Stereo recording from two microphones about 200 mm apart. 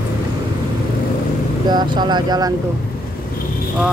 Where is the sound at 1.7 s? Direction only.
20° right (ahead or behind).